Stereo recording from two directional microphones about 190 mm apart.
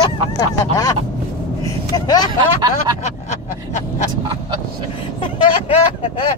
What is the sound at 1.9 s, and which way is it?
Speech, 20° left (ahead or behind).